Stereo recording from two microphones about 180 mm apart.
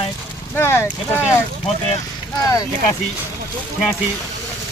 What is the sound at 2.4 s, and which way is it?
Speech, 20° left (ahead or behind).